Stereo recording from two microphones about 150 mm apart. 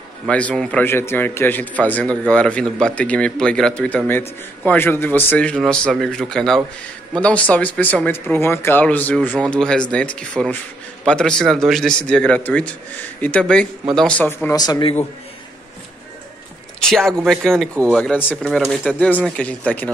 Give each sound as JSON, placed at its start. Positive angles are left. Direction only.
{"t": 0.3, "sound": "a man's voice", "side_deg": 10}
{"t": 14.5, "sound": "speech", "side_deg": 25}
{"t": 16.9, "sound": "a man's voice", "side_deg": 0}
{"t": 18.5, "sound": "a man's voice", "side_deg": 0}